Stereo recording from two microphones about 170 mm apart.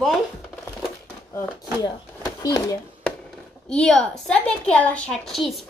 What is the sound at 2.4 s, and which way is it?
Speech, 20° left (ahead or behind).